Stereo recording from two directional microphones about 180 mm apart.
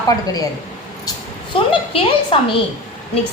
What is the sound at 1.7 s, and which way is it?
Speech, 30° left (ahead or behind).